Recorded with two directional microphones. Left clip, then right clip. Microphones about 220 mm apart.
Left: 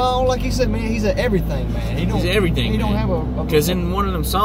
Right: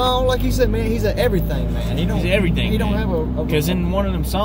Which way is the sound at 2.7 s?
20° right (ahead or behind).